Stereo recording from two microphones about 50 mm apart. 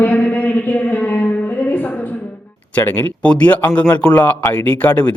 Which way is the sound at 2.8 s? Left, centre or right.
Left.